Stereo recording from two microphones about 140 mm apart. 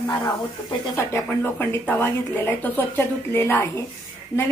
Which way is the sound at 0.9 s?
15° left (ahead or behind).